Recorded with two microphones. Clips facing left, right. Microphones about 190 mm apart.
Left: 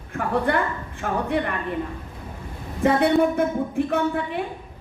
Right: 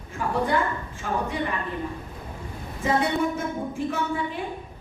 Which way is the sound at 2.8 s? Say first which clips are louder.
Left 6 dB; 60° left (ahead or behind).